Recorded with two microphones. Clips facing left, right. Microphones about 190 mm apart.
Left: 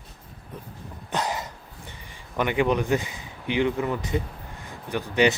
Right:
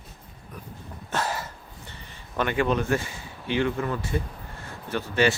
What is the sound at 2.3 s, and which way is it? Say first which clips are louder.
Speech: left 1 dB; 15° left (ahead or behind).